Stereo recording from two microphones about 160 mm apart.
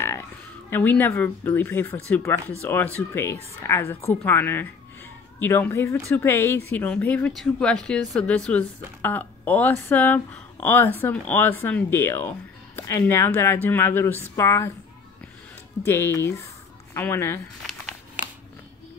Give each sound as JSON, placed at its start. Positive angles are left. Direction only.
{"t": 0.7, "sound": "speech", "side_deg": 10}
{"t": 15.8, "sound": "speech", "side_deg": 15}
{"t": 17.6, "sound": "a sound", "side_deg": -10}